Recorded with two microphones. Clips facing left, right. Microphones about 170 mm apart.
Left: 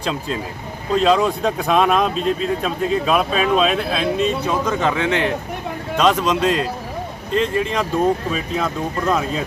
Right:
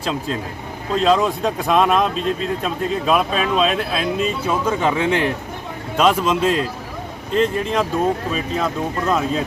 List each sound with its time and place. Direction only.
0.0 s speech: centre (ahead or behind)